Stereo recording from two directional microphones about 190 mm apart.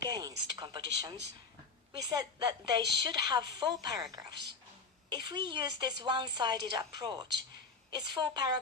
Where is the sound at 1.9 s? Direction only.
20° right (ahead or behind).